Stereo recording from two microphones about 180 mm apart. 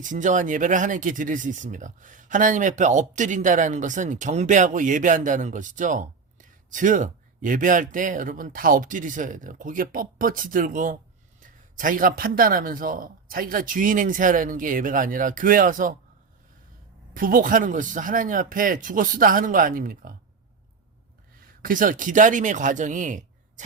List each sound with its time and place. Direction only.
0.0 s speech: 45° right (ahead or behind)
17.2 s speech: 50° right (ahead or behind)
21.6 s speech: 50° right (ahead or behind)